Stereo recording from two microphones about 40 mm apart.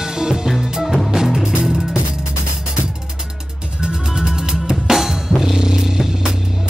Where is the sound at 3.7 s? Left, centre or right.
Centre.